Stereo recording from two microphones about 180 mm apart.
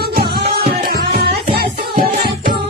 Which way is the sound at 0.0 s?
60° right (ahead or behind).